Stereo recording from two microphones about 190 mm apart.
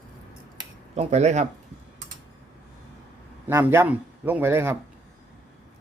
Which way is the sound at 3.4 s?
10° right (ahead or behind).